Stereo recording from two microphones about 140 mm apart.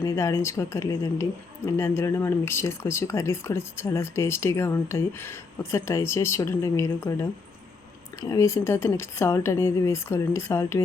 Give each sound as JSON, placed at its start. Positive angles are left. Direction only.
{"t": 0.0, "sound": "speech", "side_deg": 20}